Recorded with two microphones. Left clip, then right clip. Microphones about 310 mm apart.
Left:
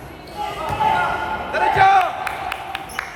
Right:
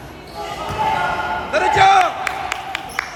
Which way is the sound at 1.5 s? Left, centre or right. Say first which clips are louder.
Right 2 dB; right.